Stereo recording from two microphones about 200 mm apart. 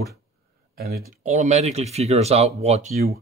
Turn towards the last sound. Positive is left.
turn(degrees=-35)  # may be behind; listen again after turning